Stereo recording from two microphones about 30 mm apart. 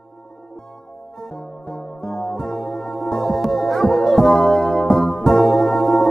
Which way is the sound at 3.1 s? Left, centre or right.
Centre.